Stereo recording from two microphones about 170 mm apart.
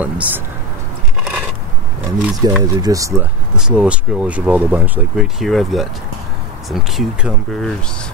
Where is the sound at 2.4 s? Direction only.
20° right (ahead or behind).